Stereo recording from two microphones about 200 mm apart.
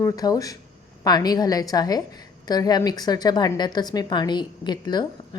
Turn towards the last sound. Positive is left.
turn(degrees=20)  # may be behind; listen again after turning